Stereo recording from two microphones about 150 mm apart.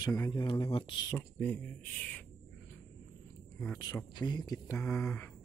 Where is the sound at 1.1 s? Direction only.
15° left (ahead or behind).